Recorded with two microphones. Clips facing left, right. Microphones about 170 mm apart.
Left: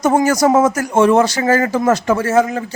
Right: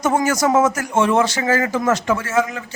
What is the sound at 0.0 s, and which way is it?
Speech, 35° left (ahead or behind).